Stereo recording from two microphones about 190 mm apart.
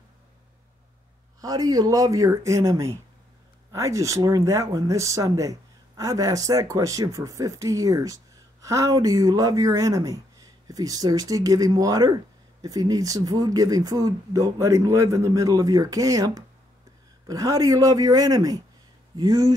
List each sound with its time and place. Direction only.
1.4 s speech: 20° right (ahead or behind)